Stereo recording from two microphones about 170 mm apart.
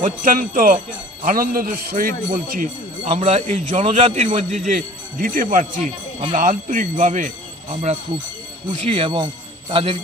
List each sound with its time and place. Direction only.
0.0 s a man's voice: 55° right (ahead or behind)
3.2 s a man's voice: 40° right (ahead or behind)
7.7 s speech: 40° right (ahead or behind)